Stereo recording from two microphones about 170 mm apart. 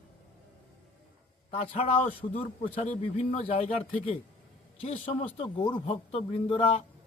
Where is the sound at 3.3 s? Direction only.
40° left (ahead or behind).